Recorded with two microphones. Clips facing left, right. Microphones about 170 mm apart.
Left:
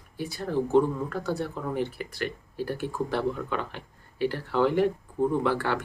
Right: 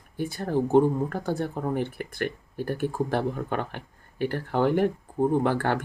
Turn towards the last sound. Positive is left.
turn(degrees=-50)  # may be behind; listen again after turning